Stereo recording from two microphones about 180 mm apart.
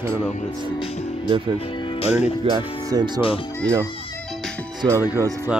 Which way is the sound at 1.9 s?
35° left (ahead or behind).